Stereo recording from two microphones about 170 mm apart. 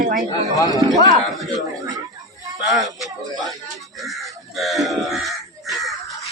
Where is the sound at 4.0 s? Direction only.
Centre (ahead or behind).